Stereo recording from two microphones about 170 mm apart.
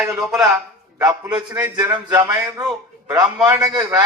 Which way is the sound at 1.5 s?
20° right (ahead or behind).